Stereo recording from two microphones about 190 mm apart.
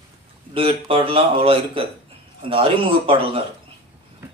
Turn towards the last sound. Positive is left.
turn(degrees=-30)  # may be behind; listen again after turning